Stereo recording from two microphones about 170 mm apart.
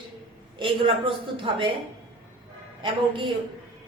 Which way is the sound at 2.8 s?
30° right (ahead or behind).